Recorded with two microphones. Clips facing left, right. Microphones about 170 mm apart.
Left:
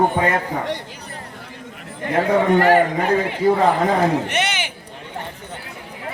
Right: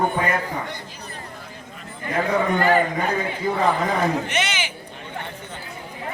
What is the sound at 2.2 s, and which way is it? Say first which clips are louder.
A man's voice: left 5 dB; 70° left (ahead or behind).